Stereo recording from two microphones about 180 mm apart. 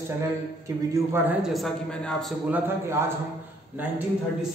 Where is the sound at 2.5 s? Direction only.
10° right (ahead or behind).